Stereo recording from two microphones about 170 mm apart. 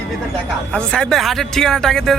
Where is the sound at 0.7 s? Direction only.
5° left (ahead or behind).